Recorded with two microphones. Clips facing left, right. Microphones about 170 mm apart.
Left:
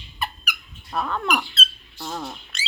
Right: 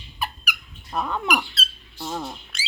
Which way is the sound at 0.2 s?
10° right (ahead or behind).